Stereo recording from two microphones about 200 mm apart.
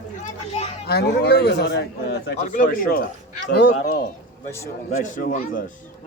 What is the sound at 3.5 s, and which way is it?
Speech, 55° left (ahead or behind).